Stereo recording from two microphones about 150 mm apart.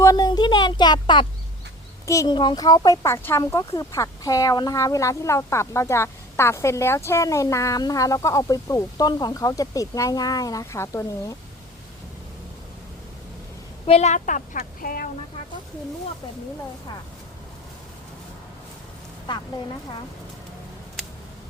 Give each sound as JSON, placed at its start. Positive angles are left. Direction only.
{"t": 0.0, "sound": "speech", "side_deg": 25}
{"t": 13.8, "sound": "a woman's voice", "side_deg": 45}